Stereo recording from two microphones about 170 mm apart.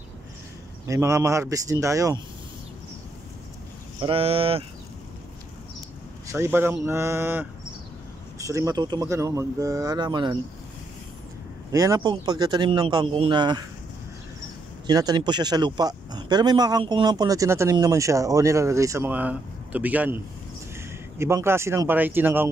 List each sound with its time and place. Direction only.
0.8 s speech: 20° right (ahead or behind)
4.0 s speech: 35° right (ahead or behind)
6.2 s speech: 15° right (ahead or behind)
11.7 s speech: 20° right (ahead or behind)
14.9 s speech: 25° right (ahead or behind)
21.2 s speech: 15° right (ahead or behind)